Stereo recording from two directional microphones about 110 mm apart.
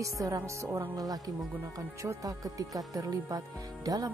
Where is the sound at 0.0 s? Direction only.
30° right (ahead or behind).